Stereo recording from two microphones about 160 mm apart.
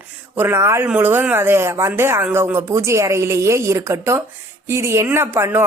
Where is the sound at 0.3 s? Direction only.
15° right (ahead or behind).